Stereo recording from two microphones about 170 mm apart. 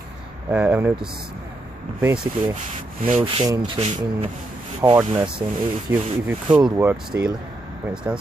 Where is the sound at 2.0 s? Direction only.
10° right (ahead or behind).